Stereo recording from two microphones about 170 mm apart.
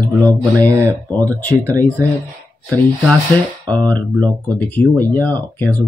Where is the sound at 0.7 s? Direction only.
20° right (ahead or behind).